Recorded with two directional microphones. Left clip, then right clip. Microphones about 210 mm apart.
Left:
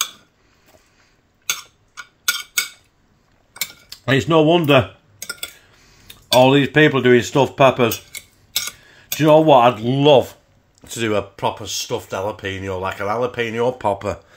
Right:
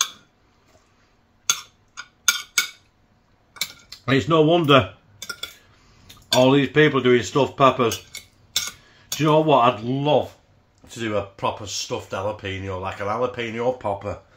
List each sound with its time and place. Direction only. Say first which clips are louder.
1.5 s a sound: right 1 dB; 5° left (ahead or behind)
3.9 s speech: left 4 dB; 45° left (ahead or behind)
6.5 s speech: left 3 dB; 45° left (ahead or behind)
8.1 s cutlery: left 2 dB; 5° left (ahead or behind)
9.2 s speech: left 5 dB; 45° left (ahead or behind)
11.3 s speech: left 3 dB; 30° left (ahead or behind); by 14.1 s 50° left (ahead or behind)